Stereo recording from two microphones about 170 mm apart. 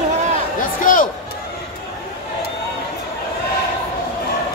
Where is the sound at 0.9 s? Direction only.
50° left (ahead or behind).